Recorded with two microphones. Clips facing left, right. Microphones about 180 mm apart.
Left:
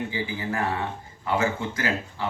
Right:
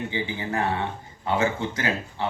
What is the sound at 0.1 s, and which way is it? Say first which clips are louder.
Speech: right 1 dB; 25° right (ahead or behind).